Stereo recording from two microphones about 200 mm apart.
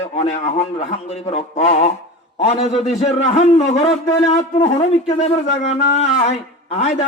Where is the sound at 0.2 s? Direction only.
35° left (ahead or behind).